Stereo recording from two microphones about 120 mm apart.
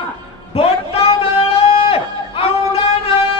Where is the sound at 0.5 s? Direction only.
55° left (ahead or behind).